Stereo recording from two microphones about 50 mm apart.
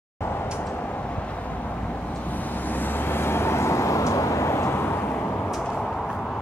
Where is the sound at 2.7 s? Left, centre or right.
Left.